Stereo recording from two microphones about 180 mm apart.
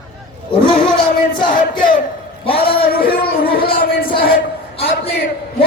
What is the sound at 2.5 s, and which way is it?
Speech, 60° left (ahead or behind).